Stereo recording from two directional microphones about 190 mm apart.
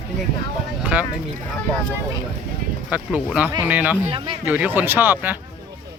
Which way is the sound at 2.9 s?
5° right (ahead or behind).